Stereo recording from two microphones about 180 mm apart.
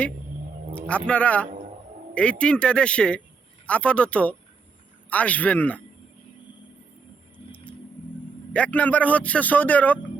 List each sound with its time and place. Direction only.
0.7 s speech: 5° left (ahead or behind)
8.5 s speech: 10° left (ahead or behind)